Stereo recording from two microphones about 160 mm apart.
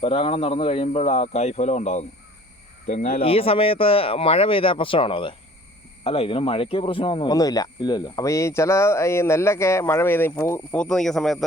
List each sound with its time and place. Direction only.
0.0 s speech: 35° left (ahead or behind)
2.8 s speech: 60° left (ahead or behind)
3.2 s speech: 35° left (ahead or behind); by 11.4 s centre (ahead or behind)